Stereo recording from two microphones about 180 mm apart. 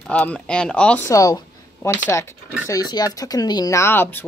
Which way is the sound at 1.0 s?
20° left (ahead or behind).